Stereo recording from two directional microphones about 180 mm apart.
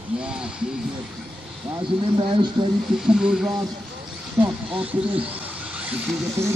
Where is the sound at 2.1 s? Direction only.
30° right (ahead or behind).